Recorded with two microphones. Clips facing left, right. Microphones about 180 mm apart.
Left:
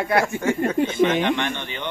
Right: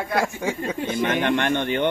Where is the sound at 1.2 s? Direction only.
55° right (ahead or behind).